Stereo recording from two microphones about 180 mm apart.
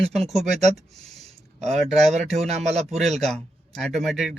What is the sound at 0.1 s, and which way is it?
Speech, centre (ahead or behind).